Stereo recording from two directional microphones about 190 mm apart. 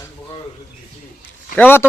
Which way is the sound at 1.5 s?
10° left (ahead or behind).